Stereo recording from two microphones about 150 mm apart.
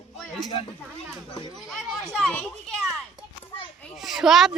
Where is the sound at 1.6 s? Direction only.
Centre (ahead or behind).